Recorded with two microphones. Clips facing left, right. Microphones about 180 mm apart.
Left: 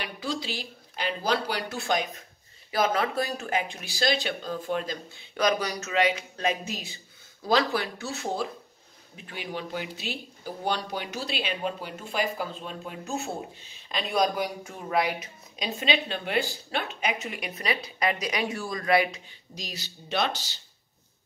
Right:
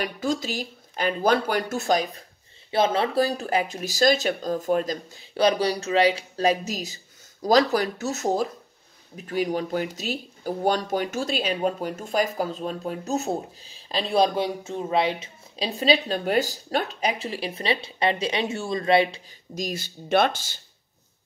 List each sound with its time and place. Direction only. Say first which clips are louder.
0.0 s speech: right 6 dB; 45° right (ahead or behind); by 19.2 s 25° right (ahead or behind)
19.5 s speech: right 10 dB; 50° right (ahead or behind)